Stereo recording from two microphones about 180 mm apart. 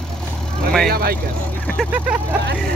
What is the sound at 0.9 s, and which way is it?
Speech, 55° right (ahead or behind).